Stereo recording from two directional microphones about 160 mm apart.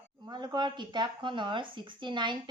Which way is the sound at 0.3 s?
25° right (ahead or behind).